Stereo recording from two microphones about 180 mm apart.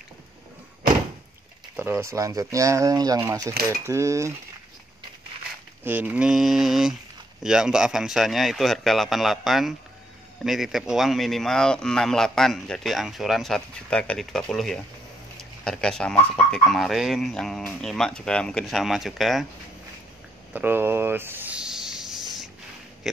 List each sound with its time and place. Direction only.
1.8 s speech: 15° right (ahead or behind)
5.9 s speech: 10° right (ahead or behind)
20.5 s a sound: 10° right (ahead or behind)